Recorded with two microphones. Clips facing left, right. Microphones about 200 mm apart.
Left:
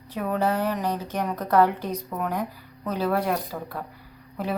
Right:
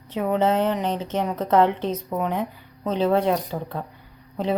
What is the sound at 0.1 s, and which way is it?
A woman's voice, 20° right (ahead or behind).